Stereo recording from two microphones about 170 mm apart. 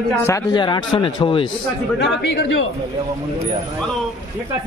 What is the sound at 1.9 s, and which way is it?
Speech, 85° left.